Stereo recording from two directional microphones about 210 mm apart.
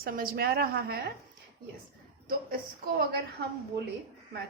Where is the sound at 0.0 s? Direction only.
45° right (ahead or behind).